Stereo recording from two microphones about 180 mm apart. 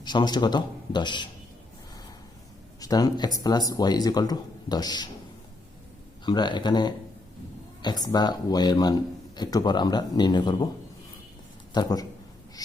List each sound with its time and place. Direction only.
0.0 s speech: 25° left (ahead or behind)
2.8 s speech: 20° left (ahead or behind)
6.2 s speech: 25° left (ahead or behind)
11.7 s speech: 20° left (ahead or behind)
12.6 s bird: 20° left (ahead or behind)